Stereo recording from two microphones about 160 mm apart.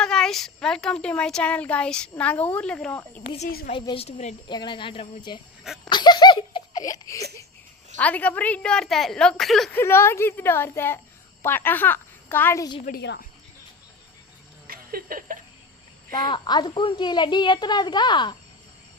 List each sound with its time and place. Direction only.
0.0 s a woman's voice: 5° left (ahead or behind)
3.7 s a woman's voice: 35° left (ahead or behind)
4.4 s a child's voice: 30° left (ahead or behind)
5.6 s wheeze: centre (ahead or behind)
5.9 s laughter: 25° left (ahead or behind)
7.9 s a woman's voice: 10° left (ahead or behind)
9.7 s a woman's voice: 15° left (ahead or behind)
12.8 s a woman's voice: 75° left (ahead or behind)
14.7 s a sound: 65° right (ahead or behind)
16.1 s a child's voice: 30° left (ahead or behind)